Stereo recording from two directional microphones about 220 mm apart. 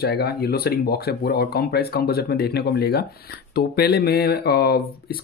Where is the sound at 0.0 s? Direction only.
45° left (ahead or behind).